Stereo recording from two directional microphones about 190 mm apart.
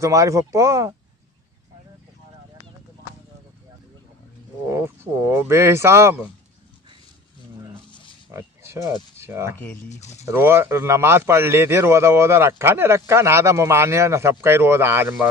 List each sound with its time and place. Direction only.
0.0 s a man's voice: 15° right (ahead or behind)
4.6 s a man's voice: 10° right (ahead or behind)
8.3 s speech: 15° right (ahead or behind)
9.8 s speech: 35° left (ahead or behind)
10.2 s a man's voice: 10° right (ahead or behind)